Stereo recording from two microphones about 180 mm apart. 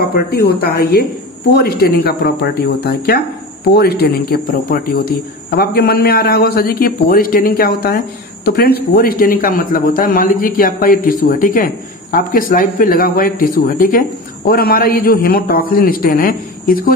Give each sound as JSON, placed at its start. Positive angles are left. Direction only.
{"t": 0.1, "sound": "a man's voice", "side_deg": 60}